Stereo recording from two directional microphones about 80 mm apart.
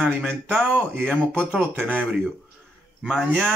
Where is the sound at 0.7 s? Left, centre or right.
Centre.